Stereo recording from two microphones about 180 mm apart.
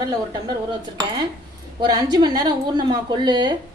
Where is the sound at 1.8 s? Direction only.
25° right (ahead or behind).